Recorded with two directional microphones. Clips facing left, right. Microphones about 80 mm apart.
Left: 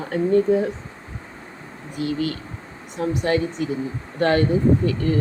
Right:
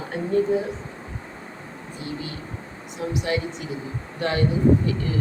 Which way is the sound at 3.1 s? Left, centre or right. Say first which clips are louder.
Left 4 dB; left.